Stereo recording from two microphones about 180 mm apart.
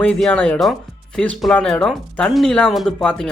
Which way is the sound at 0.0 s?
5° left (ahead or behind).